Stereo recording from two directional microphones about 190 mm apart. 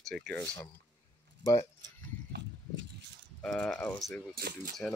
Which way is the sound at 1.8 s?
70° right (ahead or behind).